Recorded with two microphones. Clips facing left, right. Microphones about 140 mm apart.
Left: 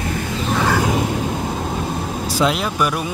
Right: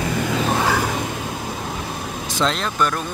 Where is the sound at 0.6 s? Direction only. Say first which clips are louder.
Left 3 dB; centre (ahead or behind).